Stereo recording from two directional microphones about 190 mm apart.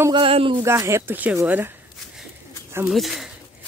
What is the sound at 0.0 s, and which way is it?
Speech, 25° right (ahead or behind).